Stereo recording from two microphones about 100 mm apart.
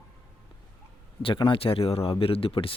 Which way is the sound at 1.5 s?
70° left (ahead or behind).